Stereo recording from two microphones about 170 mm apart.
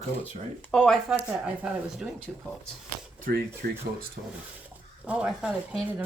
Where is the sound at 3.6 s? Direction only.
60° right (ahead or behind).